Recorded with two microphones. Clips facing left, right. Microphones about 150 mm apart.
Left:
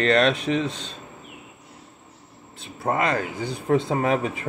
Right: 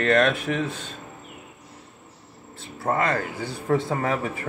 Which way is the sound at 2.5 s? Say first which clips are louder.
Even; 15° left (ahead or behind).